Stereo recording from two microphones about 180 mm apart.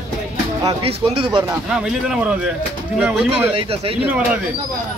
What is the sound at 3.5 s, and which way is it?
Speech, 30° right (ahead or behind).